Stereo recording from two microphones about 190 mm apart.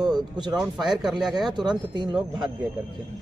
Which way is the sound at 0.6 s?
5° right (ahead or behind).